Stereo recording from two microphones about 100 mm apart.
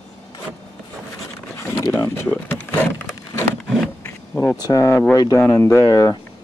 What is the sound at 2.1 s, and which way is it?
Speech, 25° left (ahead or behind).